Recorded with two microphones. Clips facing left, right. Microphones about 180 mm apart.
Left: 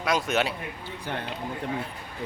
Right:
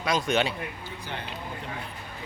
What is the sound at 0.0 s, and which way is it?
Speech, 5° left (ahead or behind).